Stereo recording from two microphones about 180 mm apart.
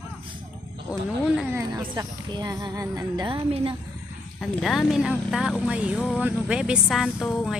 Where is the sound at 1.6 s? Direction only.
20° right (ahead or behind).